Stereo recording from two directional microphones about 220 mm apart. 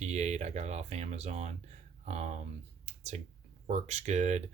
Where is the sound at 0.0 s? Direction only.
30° right (ahead or behind).